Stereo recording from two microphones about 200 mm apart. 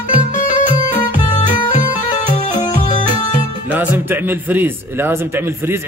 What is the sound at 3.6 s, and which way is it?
Speech, 10° right (ahead or behind).